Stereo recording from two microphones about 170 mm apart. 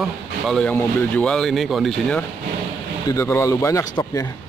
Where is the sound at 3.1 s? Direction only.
15° left (ahead or behind).